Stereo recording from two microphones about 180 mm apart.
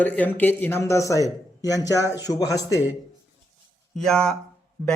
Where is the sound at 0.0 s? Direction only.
10° left (ahead or behind).